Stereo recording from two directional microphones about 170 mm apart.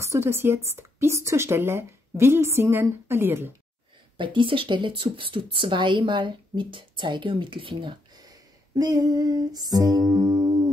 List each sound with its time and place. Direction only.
0.0 s speech: 15° right (ahead or behind)
4.2 s speech: 30° right (ahead or behind)